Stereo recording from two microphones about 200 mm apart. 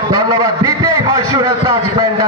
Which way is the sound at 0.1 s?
20° right (ahead or behind).